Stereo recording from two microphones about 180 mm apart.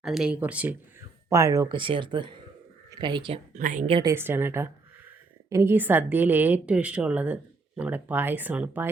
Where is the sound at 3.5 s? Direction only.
45° right (ahead or behind).